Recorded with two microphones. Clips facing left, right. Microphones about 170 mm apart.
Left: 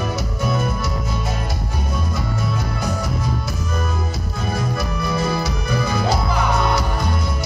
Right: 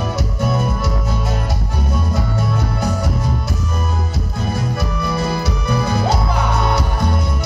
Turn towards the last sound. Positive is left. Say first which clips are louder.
# right 2 dB
turn(degrees=-65)  # may be behind; listen again after turning